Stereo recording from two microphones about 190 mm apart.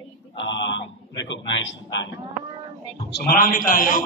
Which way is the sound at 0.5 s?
75° left (ahead or behind).